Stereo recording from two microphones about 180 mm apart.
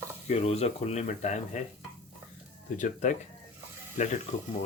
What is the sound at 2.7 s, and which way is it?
Speech, 45° left (ahead or behind).